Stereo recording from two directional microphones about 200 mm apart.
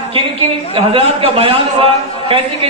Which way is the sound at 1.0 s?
30° right (ahead or behind).